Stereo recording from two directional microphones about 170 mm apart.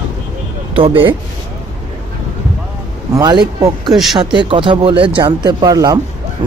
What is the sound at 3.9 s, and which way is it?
Speech, centre (ahead or behind).